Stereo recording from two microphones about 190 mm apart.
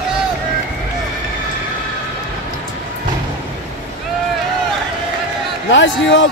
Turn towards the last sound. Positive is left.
turn(degrees=80)